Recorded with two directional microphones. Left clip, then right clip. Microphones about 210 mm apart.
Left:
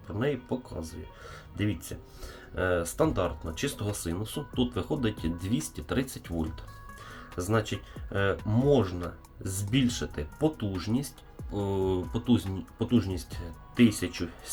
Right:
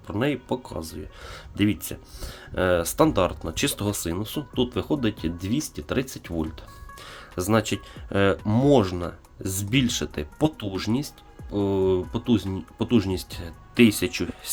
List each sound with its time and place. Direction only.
0.2 s speech: 45° right (ahead or behind)
11.5 s speech: 30° right (ahead or behind)